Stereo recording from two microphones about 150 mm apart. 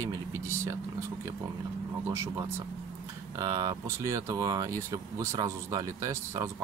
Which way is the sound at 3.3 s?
25° right (ahead or behind).